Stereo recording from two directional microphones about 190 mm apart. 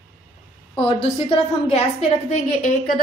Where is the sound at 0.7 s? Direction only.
30° left (ahead or behind).